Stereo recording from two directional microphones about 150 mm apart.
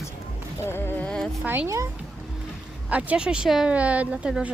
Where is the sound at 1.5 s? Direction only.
15° right (ahead or behind).